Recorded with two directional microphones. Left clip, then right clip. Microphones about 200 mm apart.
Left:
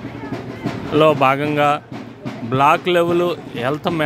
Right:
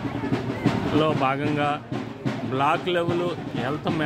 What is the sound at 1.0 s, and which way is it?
A man's voice, 50° left (ahead or behind).